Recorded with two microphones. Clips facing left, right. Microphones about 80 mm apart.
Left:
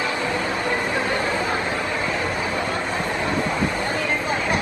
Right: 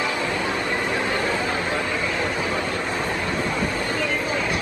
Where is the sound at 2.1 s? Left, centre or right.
Centre.